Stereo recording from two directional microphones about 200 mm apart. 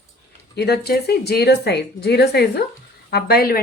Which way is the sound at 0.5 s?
55° left (ahead or behind).